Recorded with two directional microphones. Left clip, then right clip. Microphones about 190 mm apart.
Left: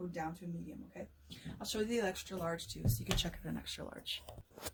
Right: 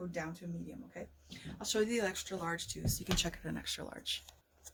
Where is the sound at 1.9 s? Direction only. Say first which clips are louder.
Right 1 dB; 15° right (ahead or behind).